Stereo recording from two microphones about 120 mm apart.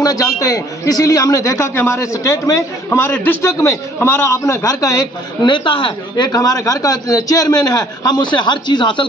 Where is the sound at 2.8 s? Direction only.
15° left (ahead or behind); by 6.3 s 45° left (ahead or behind).